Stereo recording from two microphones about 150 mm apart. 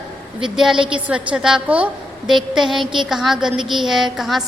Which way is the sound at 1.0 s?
10° right (ahead or behind).